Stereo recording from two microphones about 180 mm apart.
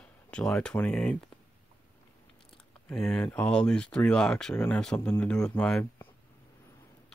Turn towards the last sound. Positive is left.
turn(degrees=10)  # may be behind; listen again after turning